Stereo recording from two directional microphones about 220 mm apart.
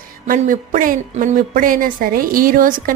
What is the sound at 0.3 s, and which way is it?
Speech, 35° right (ahead or behind).